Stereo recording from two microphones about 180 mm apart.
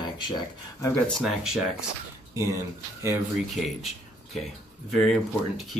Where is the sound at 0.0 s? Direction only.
20° left (ahead or behind).